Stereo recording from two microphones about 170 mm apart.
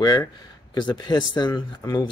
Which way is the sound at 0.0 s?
20° left (ahead or behind).